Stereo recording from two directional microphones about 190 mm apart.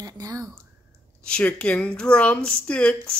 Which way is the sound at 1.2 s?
5° left (ahead or behind).